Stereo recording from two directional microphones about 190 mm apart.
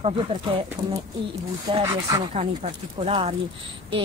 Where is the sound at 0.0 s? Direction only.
30° right (ahead or behind).